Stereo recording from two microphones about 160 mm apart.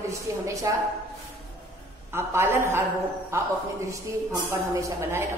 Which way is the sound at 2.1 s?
15° right (ahead or behind).